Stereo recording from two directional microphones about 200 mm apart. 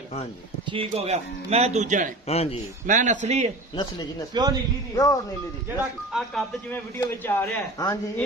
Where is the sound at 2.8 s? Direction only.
40° right (ahead or behind).